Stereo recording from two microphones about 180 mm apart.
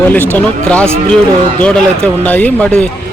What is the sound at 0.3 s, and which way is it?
Speech, 5° left (ahead or behind).